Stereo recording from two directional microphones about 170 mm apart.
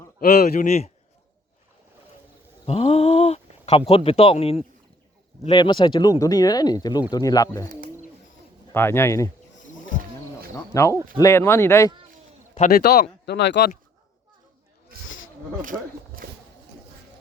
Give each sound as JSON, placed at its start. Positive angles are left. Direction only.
{"t": 0.2, "sound": "speech", "side_deg": 65}
{"t": 0.6, "sound": "a man's voice", "side_deg": 40}
{"t": 2.6, "sound": "speech", "side_deg": 35}
{"t": 8.7, "sound": "speech", "side_deg": 15}
{"t": 9.8, "sound": "roaring cats", "side_deg": -55}
{"t": 10.5, "sound": "speech", "side_deg": 15}
{"t": 12.5, "sound": "a man's voice", "side_deg": 45}
{"t": 12.8, "sound": "speech", "side_deg": 65}
{"t": 15.6, "sound": "speech", "side_deg": -55}